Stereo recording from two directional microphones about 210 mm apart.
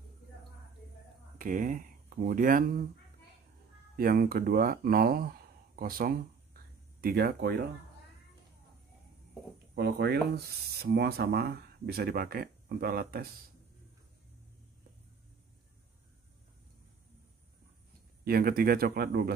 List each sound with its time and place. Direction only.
1.4 s speech: 40° right (ahead or behind)
3.9 s speech: 45° right (ahead or behind)
9.8 s speech: 55° right (ahead or behind)
18.2 s speech: 45° right (ahead or behind)